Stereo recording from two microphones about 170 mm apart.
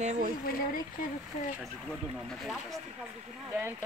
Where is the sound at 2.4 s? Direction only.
Centre (ahead or behind).